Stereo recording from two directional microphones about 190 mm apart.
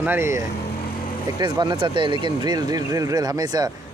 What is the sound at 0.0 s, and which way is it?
Speech, 10° right (ahead or behind).